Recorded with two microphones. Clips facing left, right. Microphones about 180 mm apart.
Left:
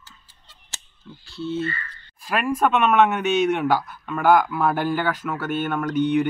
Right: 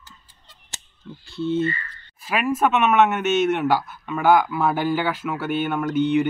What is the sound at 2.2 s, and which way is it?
A man's voice, 5° right (ahead or behind).